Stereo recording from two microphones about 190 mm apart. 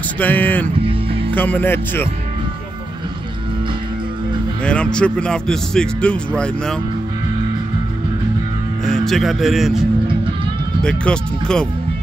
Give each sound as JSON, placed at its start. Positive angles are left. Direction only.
{"t": 0.2, "sound": "speech", "side_deg": 10}
{"t": 0.8, "sound": "music", "side_deg": -30}
{"t": 1.3, "sound": "speech", "side_deg": 10}
{"t": 4.6, "sound": "speech", "side_deg": 5}
{"t": 8.8, "sound": "speech", "side_deg": 0}